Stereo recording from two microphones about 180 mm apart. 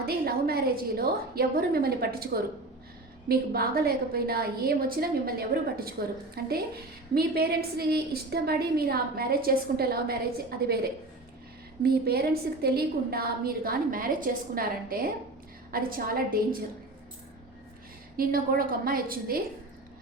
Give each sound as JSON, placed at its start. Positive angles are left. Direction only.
{"t": 0.0, "sound": "a woman's voice", "side_deg": -60}
{"t": 11.8, "sound": "a woman's voice", "side_deg": -60}
{"t": 18.2, "sound": "a woman's voice", "side_deg": -55}